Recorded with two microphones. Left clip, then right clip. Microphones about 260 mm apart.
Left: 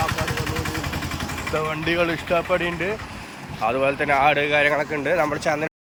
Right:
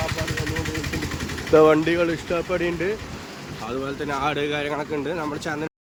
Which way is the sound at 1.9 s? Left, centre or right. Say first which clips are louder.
Left 1 dB; centre.